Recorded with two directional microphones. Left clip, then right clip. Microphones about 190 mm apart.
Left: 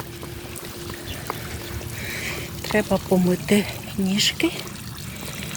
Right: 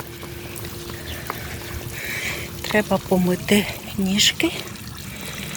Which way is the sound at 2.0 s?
10° left (ahead or behind).